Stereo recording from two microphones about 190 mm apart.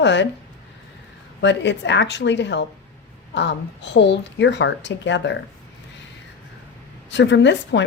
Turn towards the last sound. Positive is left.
turn(degrees=70)  # may be behind; listen again after turning